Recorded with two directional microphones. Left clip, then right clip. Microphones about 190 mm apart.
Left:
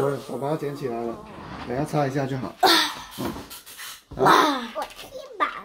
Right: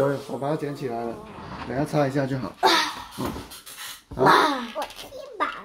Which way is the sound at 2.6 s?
50° left (ahead or behind).